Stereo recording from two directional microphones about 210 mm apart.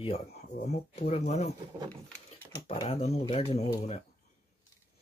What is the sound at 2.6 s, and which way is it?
Speech, 25° left (ahead or behind).